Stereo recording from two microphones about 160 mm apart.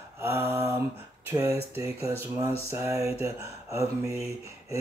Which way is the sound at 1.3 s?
20° right (ahead or behind).